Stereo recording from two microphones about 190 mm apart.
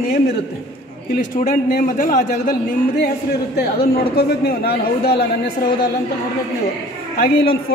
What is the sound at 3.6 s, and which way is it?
A man's voice, 55° left (ahead or behind).